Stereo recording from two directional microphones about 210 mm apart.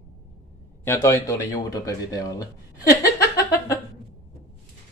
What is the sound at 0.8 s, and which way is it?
Speech, 10° left (ahead or behind).